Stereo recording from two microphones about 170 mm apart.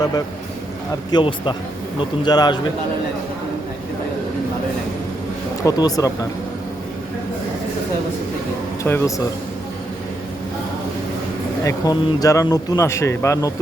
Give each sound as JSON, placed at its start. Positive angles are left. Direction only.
{"t": 1.1, "sound": "speech", "side_deg": 30}
{"t": 5.6, "sound": "speech", "side_deg": 20}
{"t": 8.8, "sound": "speech", "side_deg": 20}
{"t": 11.6, "sound": "speech", "side_deg": 20}